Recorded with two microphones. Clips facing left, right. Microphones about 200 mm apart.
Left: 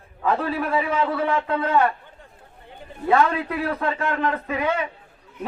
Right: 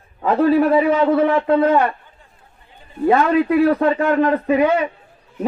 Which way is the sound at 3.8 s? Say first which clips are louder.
Right 8 dB; 30° right (ahead or behind).